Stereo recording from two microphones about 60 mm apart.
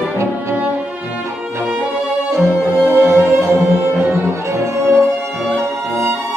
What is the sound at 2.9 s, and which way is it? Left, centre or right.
Music, right.